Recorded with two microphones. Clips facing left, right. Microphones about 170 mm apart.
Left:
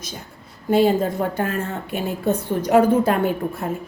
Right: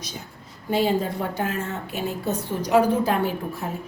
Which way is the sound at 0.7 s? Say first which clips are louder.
Left 5 dB; 50° left (ahead or behind).